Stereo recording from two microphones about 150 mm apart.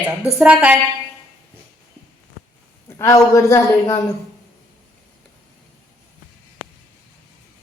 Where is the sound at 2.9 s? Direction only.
20° left (ahead or behind).